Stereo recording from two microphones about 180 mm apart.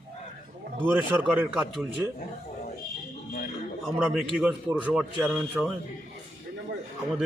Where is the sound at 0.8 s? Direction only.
10° right (ahead or behind).